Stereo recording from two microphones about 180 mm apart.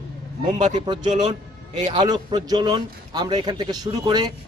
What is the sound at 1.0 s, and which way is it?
Speech, 40° right (ahead or behind).